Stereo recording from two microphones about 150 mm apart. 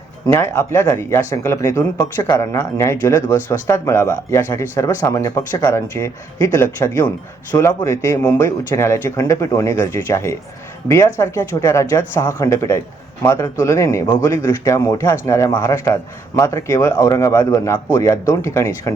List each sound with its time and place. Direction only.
0.3 s speech: 15° left (ahead or behind)